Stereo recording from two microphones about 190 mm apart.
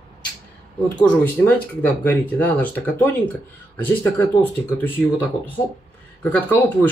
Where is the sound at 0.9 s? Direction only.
10° left (ahead or behind).